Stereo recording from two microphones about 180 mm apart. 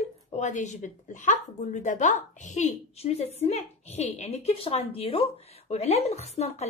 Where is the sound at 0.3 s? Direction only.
40° left (ahead or behind).